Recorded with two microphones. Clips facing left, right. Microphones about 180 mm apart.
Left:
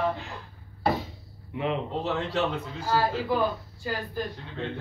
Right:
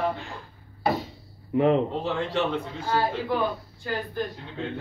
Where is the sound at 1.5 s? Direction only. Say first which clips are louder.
Right 9 dB; 45° right (ahead or behind).